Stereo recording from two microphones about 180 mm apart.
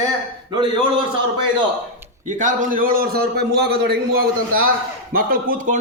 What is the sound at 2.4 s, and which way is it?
A man's voice, 45° right (ahead or behind).